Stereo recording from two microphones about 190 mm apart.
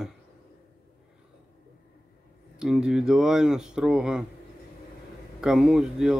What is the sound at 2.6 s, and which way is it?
Speech, 5° right (ahead or behind).